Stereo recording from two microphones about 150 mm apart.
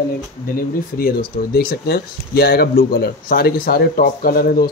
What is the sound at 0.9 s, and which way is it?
Speech, 85° left.